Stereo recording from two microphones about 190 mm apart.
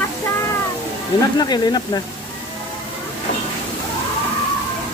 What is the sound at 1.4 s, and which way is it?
Speech, 20° left (ahead or behind).